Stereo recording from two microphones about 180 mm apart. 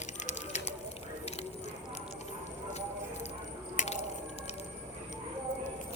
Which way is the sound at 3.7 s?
40° left (ahead or behind).